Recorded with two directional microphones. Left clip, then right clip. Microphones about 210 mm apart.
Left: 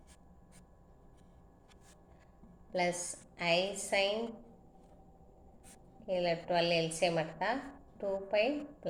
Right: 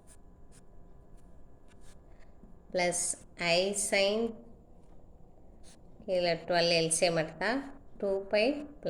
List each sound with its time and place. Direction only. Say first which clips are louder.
2.7 s a woman's voice: right 3 dB; 45° right (ahead or behind)
6.1 s a woman's voice: right 3 dB; 45° right (ahead or behind)